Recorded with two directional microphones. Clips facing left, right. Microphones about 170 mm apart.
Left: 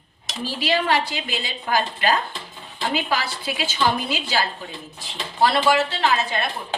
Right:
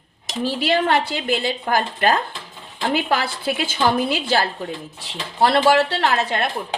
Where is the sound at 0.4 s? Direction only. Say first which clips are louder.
Right 3 dB; 55° right (ahead or behind).